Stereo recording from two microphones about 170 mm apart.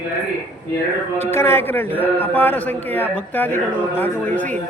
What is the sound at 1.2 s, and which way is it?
A man's voice, 15° left (ahead or behind).